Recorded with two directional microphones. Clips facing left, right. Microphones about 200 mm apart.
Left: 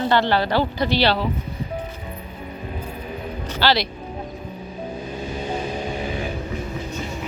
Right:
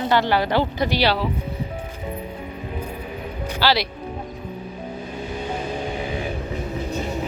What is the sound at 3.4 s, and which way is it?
Speech, 10° right (ahead or behind).